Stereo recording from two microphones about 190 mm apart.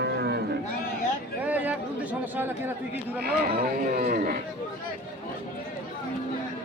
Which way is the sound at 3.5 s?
55° right (ahead or behind).